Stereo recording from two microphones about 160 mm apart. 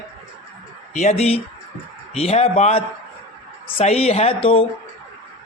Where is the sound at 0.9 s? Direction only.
45° left (ahead or behind).